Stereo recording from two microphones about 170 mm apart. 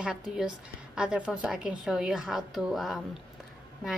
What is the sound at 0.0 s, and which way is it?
A woman's voice, 5° right (ahead or behind).